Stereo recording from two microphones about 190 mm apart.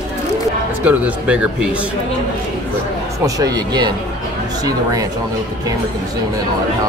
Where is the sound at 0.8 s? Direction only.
10° right (ahead or behind).